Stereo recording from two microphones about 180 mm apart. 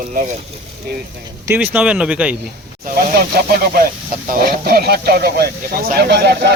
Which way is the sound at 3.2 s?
55° right (ahead or behind).